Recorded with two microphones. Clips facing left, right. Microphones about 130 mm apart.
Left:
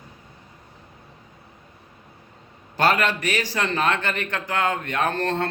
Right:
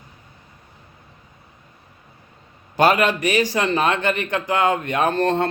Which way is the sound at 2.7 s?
15° right (ahead or behind).